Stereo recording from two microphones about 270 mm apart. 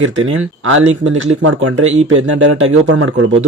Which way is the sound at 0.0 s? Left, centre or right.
Right.